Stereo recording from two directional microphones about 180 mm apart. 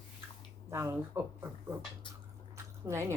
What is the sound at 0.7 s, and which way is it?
Speech, 15° right (ahead or behind).